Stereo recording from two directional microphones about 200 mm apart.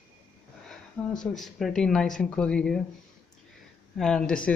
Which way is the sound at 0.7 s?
Centre (ahead or behind).